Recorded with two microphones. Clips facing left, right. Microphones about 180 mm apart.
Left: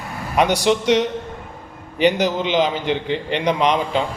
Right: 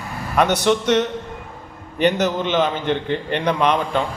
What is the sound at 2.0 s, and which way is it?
A man's voice, 10° left (ahead or behind).